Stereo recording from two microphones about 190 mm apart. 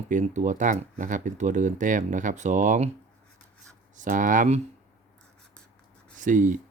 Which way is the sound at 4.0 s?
45° right (ahead or behind).